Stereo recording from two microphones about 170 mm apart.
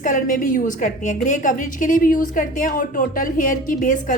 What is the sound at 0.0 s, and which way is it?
A woman's voice, 50° left (ahead or behind).